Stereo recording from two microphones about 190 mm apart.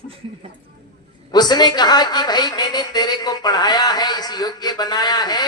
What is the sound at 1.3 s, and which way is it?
A woman's voice, 20° left (ahead or behind).